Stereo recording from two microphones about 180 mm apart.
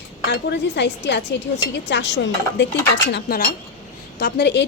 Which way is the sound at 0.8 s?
75° left (ahead or behind).